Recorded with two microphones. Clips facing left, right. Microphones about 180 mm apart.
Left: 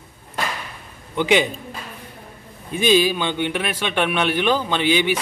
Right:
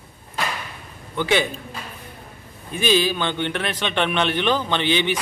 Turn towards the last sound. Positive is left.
turn(degrees=10)  # may be behind; listen again after turning